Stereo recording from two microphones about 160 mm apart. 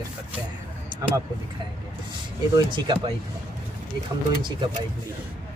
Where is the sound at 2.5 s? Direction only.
30° right (ahead or behind).